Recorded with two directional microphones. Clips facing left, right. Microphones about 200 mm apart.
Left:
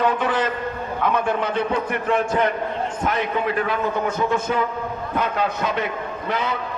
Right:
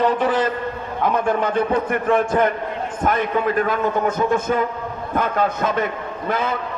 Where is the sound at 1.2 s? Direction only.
45° right (ahead or behind).